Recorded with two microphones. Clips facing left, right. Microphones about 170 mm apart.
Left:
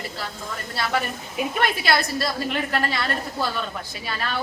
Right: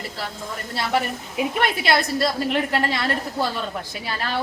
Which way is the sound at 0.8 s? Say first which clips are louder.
Right 2 dB; 25° right (ahead or behind).